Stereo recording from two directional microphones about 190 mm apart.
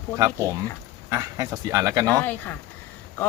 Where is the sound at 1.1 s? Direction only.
20° right (ahead or behind).